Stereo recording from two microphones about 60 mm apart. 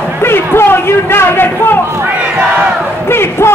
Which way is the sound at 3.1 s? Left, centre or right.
Left.